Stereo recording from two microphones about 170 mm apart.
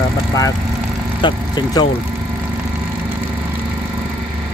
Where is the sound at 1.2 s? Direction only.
25° left (ahead or behind).